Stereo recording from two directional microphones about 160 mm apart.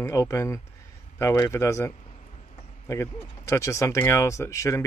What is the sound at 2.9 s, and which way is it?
Speech, 20° left (ahead or behind).